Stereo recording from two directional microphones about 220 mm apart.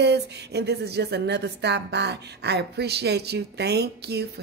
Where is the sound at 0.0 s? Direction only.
50° right (ahead or behind).